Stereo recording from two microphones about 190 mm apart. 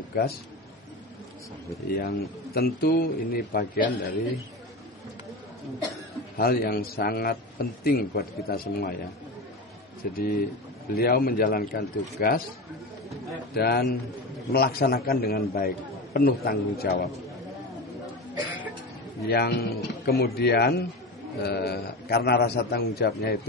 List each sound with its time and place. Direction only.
0.1 s a man's voice: 55° left (ahead or behind)
1.9 s a man's voice: 55° left (ahead or behind)
6.3 s a man's voice: 50° left (ahead or behind)
10.1 s a man's voice: 50° left (ahead or behind)
13.5 s a man's voice: 55° left (ahead or behind)
19.2 s a man's voice: 55° left (ahead or behind)